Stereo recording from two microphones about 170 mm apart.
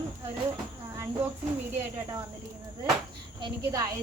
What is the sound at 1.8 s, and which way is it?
Speech, 15° right (ahead or behind).